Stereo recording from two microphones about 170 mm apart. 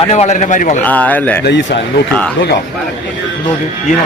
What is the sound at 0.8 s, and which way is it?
Speech, 10° left (ahead or behind).